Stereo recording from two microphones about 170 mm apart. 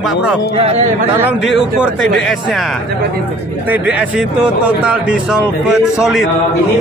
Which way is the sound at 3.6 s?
10° right (ahead or behind).